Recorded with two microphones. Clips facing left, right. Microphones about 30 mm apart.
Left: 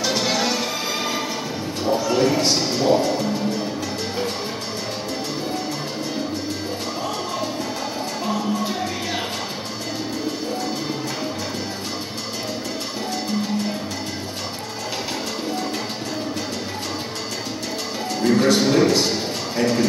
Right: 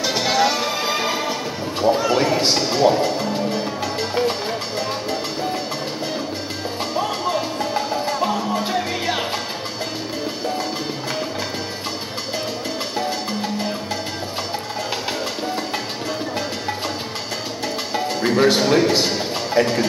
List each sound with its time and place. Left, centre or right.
0.0 s music: centre
0.8 s music: centre
1.8 s horse: right
2.2 s a sound: centre
2.7 s music: centre
8.2 s music: centre
18.3 s speech: centre
18.9 s a sound: right